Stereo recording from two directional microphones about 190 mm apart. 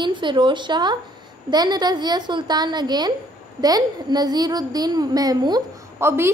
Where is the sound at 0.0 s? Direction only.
25° right (ahead or behind).